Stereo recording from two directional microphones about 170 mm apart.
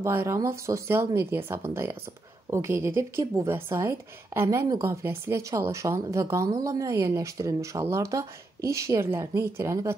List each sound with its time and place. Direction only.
0.0 s a woman's voice: 15° right (ahead or behind)